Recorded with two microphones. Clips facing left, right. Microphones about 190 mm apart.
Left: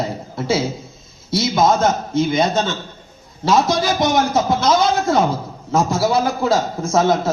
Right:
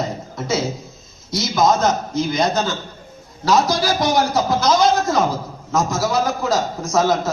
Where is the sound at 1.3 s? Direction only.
25° left (ahead or behind).